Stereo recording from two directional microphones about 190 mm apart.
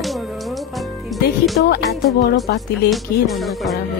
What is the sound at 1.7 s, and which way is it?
Music, 60° left (ahead or behind).